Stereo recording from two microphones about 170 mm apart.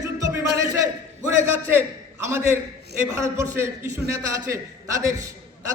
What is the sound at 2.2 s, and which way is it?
A man's voice, 15° right (ahead or behind).